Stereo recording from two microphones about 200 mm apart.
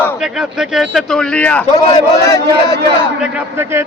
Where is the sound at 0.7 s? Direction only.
5° left (ahead or behind).